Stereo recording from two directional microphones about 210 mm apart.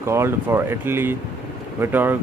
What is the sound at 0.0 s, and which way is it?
Speech, 10° right (ahead or behind).